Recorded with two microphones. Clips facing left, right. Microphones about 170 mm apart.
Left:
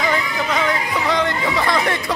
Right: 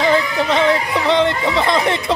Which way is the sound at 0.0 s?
30° right (ahead or behind).